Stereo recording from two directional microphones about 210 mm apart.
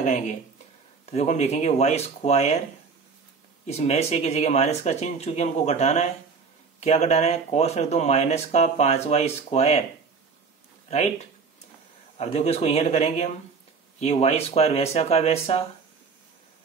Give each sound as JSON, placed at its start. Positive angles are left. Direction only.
{"t": 0.0, "sound": "speech", "side_deg": 35}
{"t": 3.6, "sound": "speech", "side_deg": 30}
{"t": 10.9, "sound": "speech", "side_deg": 35}